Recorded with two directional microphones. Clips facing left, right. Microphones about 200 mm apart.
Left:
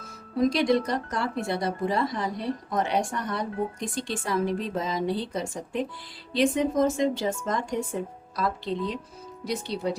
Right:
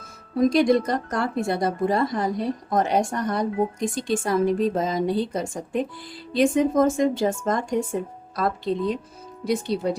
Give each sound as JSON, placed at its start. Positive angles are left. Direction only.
{"t": 0.5, "sound": "speech", "side_deg": -50}